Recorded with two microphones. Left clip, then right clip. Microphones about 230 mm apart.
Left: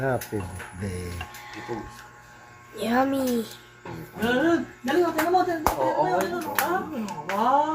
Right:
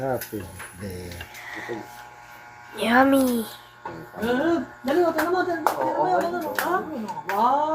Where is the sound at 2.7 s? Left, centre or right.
Centre.